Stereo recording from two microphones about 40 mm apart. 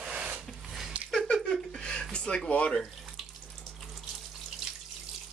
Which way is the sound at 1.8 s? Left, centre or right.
Left.